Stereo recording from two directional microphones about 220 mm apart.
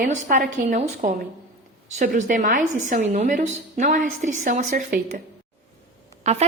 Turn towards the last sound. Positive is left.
turn(degrees=-30)  # may be behind; listen again after turning